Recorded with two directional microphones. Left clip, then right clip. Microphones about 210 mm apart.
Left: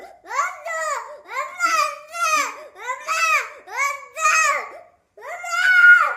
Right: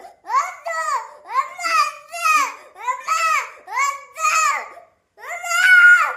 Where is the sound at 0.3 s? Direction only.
15° right (ahead or behind).